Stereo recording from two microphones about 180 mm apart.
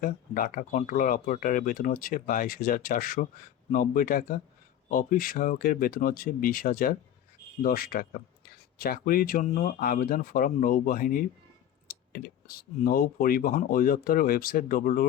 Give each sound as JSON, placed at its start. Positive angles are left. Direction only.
{"t": 0.0, "sound": "speech", "side_deg": 50}